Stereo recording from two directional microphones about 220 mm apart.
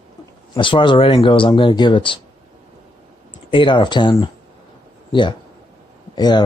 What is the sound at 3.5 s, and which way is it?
A man's voice, 20° left (ahead or behind).